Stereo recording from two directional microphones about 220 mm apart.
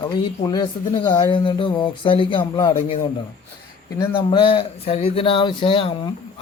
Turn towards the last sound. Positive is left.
turn(degrees=25)  # may be behind; listen again after turning